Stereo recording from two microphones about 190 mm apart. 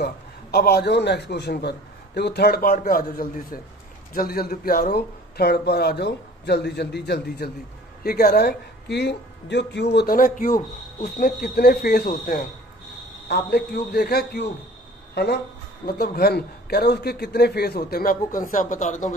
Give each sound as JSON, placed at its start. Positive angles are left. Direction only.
{"t": 0.0, "sound": "speech", "side_deg": 55}
{"t": 13.3, "sound": "speech", "side_deg": 60}